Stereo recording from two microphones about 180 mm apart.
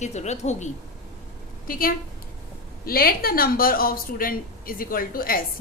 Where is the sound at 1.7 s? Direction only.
55° left (ahead or behind).